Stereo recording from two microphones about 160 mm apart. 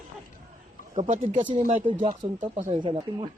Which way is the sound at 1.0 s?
50° right (ahead or behind).